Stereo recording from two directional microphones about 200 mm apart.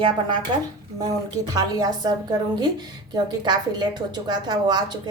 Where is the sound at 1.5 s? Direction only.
20° right (ahead or behind).